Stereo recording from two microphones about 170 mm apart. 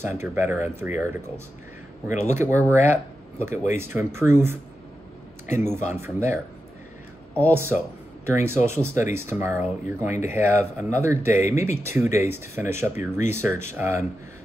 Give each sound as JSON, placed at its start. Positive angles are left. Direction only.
{"t": 0.0, "sound": "speech", "side_deg": -15}
{"t": 7.5, "sound": "speech", "side_deg": -15}